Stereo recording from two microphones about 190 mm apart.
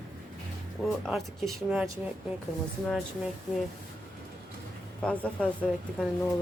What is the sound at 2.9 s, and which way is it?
Speech, centre (ahead or behind).